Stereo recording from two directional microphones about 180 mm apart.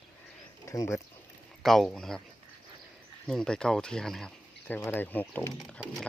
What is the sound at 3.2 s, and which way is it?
Speech, 5° left (ahead or behind).